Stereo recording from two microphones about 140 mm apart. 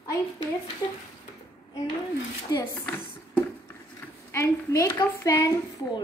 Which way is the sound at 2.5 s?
30° left (ahead or behind).